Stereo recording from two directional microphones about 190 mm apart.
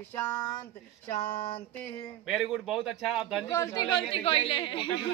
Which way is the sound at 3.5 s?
15° left (ahead or behind).